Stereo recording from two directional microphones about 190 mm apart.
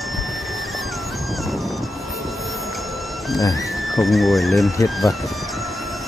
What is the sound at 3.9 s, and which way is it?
Speech, centre (ahead or behind).